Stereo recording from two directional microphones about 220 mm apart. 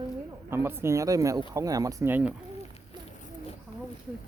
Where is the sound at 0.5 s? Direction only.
10° right (ahead or behind).